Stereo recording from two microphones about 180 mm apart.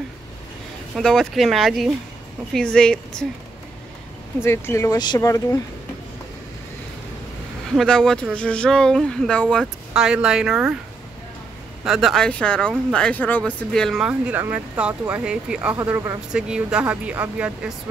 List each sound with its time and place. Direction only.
0.9 s speech: centre (ahead or behind)
4.4 s speech: 15° left (ahead or behind)
7.7 s speech: 5° left (ahead or behind)
11.8 s speech: centre (ahead or behind)